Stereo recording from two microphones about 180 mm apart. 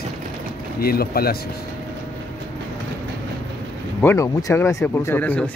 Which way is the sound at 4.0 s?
15° left (ahead or behind).